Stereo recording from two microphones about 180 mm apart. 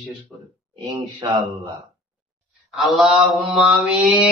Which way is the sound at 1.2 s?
25° right (ahead or behind).